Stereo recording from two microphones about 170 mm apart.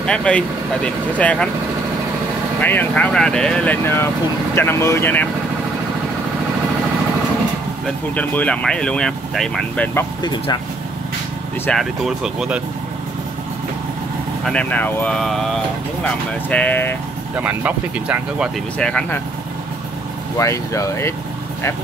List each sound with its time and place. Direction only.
0.0 s speech: 5° left (ahead or behind)
2.6 s speech: 10° left (ahead or behind)
7.8 s speech: 10° left (ahead or behind)
10.2 s speech: 25° left (ahead or behind)
11.6 s speech: centre (ahead or behind)
14.4 s speech: 5° left (ahead or behind)
17.4 s speech: 10° right (ahead or behind)
18.8 s speech: 5° left (ahead or behind)
20.3 s speech: 20° left (ahead or behind)